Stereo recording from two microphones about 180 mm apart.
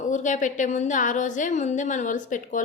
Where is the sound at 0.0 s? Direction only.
45° left (ahead or behind).